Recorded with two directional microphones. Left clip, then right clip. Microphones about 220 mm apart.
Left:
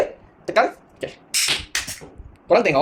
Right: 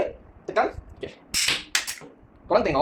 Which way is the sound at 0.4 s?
35° left (ahead or behind).